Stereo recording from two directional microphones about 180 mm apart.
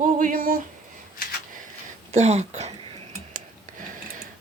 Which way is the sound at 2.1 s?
40° right (ahead or behind).